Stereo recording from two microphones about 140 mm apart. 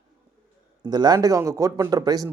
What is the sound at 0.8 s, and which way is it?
A man's voice, 30° right (ahead or behind).